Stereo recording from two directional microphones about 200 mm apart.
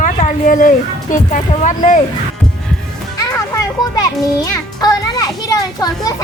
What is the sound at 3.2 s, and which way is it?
Music, 20° left (ahead or behind).